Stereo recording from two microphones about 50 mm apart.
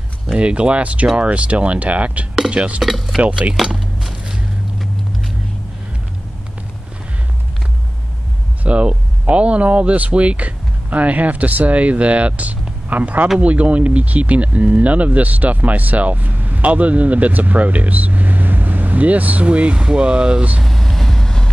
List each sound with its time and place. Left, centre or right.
0.3 s speech: right
2.8 s speech: centre
3.2 s speech: right
3.6 s a sound: centre
8.6 s speech: right
20.6 s vehicle: centre